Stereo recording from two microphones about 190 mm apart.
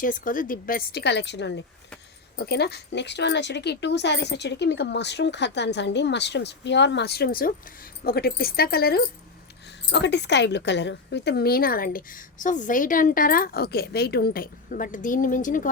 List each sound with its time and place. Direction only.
0.0 s a woman's voice: 45° left (ahead or behind)
9.9 s a woman's voice: 65° left (ahead or behind); by 15.7 s 45° left (ahead or behind)